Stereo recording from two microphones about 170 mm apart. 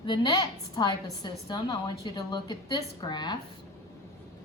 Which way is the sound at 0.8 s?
25° left (ahead or behind).